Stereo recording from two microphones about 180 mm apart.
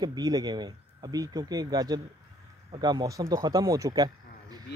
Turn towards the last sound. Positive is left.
turn(degrees=-20)  # may be behind; listen again after turning